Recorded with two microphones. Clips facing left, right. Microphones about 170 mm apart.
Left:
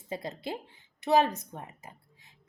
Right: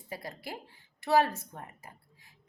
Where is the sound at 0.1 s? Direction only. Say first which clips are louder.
Left 5 dB; 25° left (ahead or behind).